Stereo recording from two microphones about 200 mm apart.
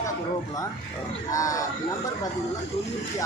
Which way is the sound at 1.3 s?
15° left (ahead or behind).